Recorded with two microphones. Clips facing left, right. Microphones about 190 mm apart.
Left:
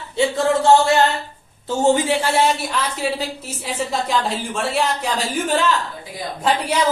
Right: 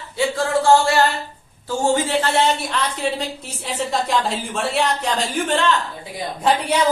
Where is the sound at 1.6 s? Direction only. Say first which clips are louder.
Left 3 dB; 15° left (ahead or behind).